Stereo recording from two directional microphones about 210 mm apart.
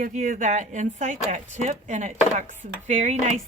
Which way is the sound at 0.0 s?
40° right (ahead or behind).